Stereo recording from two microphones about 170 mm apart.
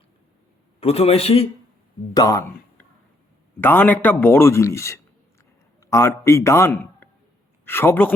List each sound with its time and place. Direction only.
0.8 s a man's voice: 35° left (ahead or behind)
2.1 s a man's voice: 20° left (ahead or behind)